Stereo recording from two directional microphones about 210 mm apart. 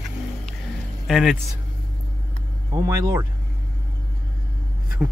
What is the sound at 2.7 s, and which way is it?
Speech, 15° right (ahead or behind).